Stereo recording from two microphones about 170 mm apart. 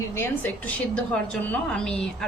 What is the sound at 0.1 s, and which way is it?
A woman's voice, 15° left (ahead or behind).